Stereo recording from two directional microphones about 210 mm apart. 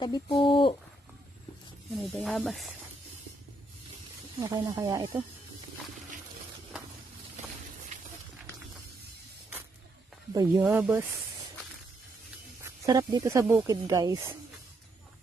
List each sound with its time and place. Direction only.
0.3 s speech: 25° left (ahead or behind)
2.0 s speech: centre (ahead or behind)
4.4 s speech: 15° right (ahead or behind)
7.4 s a sound: 35° right (ahead or behind)
10.3 s speech: 20° right (ahead or behind)
10.6 s speech: 5° right (ahead or behind)
12.8 s speech: 20° right (ahead or behind)